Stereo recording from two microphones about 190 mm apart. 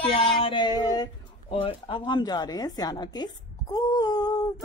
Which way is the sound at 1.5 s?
30° left (ahead or behind).